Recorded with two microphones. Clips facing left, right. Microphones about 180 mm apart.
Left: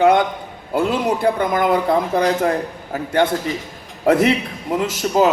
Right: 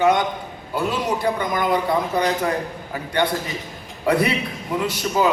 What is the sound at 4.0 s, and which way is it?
A man's voice, 45° left (ahead or behind).